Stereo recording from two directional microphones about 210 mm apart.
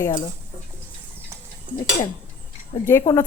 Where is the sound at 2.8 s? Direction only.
15° left (ahead or behind).